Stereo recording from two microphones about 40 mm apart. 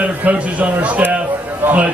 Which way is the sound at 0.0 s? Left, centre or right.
Right.